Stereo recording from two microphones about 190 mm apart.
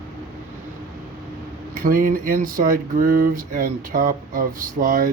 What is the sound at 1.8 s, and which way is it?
A man's voice, 45° right (ahead or behind).